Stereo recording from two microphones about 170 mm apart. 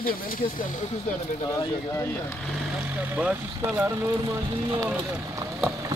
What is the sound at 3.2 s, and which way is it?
Speech, 10° right (ahead or behind).